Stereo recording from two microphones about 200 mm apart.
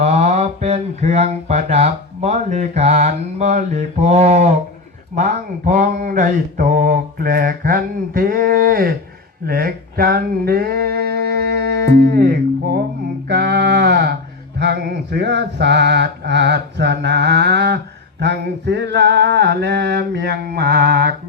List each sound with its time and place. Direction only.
0.0 s mantra: 35° right (ahead or behind)
9.5 s a sound: 50° right (ahead or behind)
14.6 s mantra: 60° right (ahead or behind)